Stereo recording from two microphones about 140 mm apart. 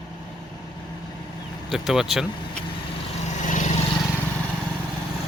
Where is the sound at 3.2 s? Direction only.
60° left (ahead or behind).